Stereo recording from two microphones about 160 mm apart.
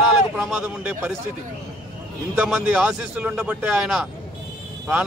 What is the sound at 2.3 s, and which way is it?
A man's voice, 5° right (ahead or behind).